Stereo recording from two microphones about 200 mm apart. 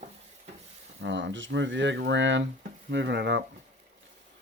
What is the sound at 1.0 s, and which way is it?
Speech, 65° right (ahead or behind).